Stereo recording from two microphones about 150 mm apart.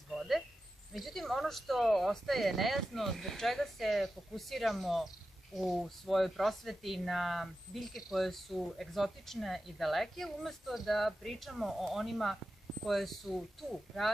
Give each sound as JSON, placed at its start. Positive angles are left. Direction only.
{"t": 0.1, "sound": "cricket", "side_deg": 0}
{"t": 0.9, "sound": "speech", "side_deg": 0}